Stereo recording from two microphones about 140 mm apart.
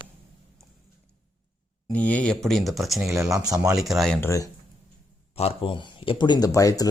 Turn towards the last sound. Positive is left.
turn(degrees=25)  # may be behind; listen again after turning